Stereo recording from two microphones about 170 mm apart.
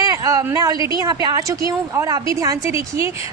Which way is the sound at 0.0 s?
20° right (ahead or behind).